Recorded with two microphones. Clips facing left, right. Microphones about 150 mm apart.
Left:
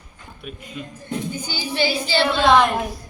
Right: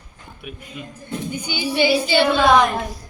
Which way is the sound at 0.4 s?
10° right (ahead or behind).